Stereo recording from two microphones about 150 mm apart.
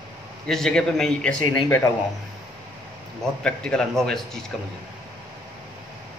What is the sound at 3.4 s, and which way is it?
Speech, 5° left (ahead or behind).